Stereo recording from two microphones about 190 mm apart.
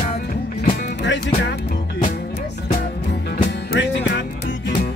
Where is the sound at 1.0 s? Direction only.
65° left (ahead or behind).